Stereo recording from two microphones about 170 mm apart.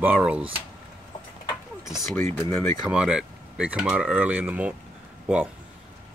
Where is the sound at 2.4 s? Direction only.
10° left (ahead or behind).